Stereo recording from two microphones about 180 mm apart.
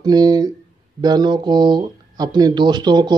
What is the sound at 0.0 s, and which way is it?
Speech, 20° right (ahead or behind).